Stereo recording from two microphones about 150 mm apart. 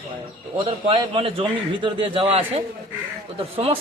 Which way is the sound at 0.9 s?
35° right (ahead or behind).